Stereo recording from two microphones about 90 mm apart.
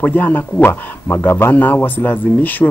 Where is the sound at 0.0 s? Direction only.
20° left (ahead or behind).